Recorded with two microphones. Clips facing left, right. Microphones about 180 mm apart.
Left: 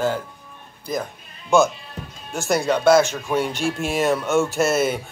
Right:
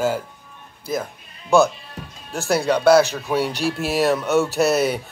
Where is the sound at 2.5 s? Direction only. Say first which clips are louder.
Right 1 dB; centre (ahead or behind).